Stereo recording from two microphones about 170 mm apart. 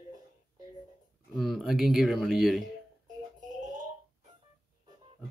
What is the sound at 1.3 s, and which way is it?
Speech, centre (ahead or behind).